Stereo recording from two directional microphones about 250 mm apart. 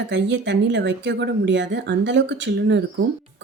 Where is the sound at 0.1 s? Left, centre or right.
Right.